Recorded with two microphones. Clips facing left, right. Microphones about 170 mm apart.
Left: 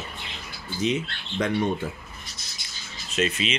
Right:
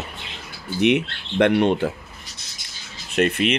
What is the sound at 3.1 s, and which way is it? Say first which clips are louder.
Speech: right 6 dB; 60° right (ahead or behind).